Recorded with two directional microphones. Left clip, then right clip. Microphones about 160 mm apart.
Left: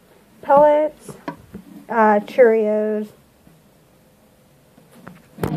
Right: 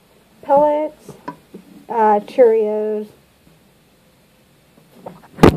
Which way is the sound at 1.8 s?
20° right (ahead or behind).